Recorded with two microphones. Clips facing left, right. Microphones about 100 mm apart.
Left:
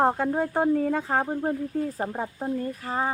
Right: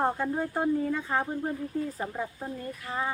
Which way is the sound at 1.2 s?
40° left (ahead or behind).